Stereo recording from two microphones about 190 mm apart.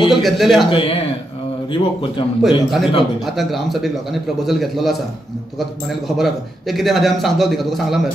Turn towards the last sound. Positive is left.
turn(degrees=0)  # may be behind; listen again after turning